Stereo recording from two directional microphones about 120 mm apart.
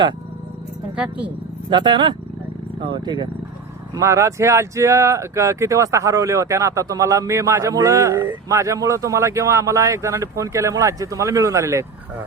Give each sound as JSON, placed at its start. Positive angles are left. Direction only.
{"t": 1.7, "sound": "speech", "side_deg": -40}
{"t": 3.9, "sound": "speech", "side_deg": -25}